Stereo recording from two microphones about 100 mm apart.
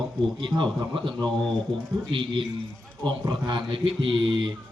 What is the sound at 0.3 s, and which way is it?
Speech, 55° right (ahead or behind).